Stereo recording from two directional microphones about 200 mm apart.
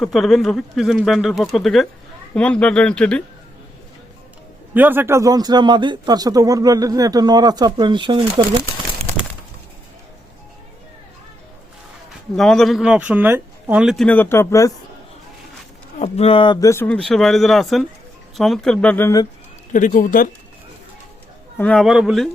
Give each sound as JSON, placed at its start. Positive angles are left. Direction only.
{"t": 0.0, "sound": "speech", "side_deg": 0}
{"t": 4.7, "sound": "speech", "side_deg": -10}
{"t": 12.4, "sound": "speech", "side_deg": 0}
{"t": 16.0, "sound": "speech", "side_deg": 30}
{"t": 19.7, "sound": "speech", "side_deg": 40}
{"t": 21.6, "sound": "speech", "side_deg": 5}